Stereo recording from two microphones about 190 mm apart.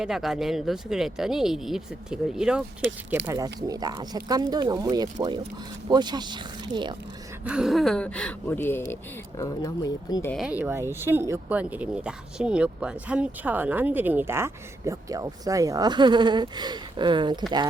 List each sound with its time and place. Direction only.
0.0 s speech: centre (ahead or behind)
3.2 s speech: 20° right (ahead or behind)
7.4 s speech: 5° right (ahead or behind); by 10.3 s 15° left (ahead or behind)
10.3 s speech: 5° right (ahead or behind); by 17.4 s 25° right (ahead or behind)